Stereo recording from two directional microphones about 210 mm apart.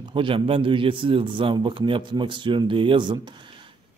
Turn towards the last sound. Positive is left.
turn(degrees=-20)  # may be behind; listen again after turning